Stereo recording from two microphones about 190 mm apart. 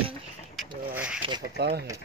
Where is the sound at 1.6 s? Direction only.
60° right (ahead or behind).